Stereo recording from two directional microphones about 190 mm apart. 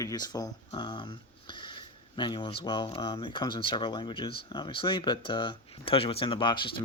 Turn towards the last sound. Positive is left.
turn(degrees=25)  # may be behind; listen again after turning